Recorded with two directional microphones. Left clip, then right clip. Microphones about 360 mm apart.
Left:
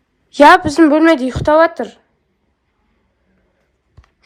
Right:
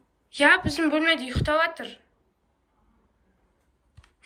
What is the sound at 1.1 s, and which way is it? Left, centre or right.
Speech, centre.